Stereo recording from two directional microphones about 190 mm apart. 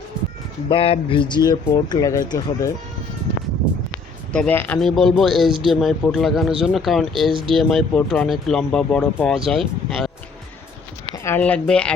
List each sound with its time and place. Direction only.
0.7 s speech: 30° left (ahead or behind)
4.3 s speech: 5° left (ahead or behind)
7.3 s speech: 25° right (ahead or behind)
7.5 s speech: centre (ahead or behind)
11.1 s speech: 15° left (ahead or behind)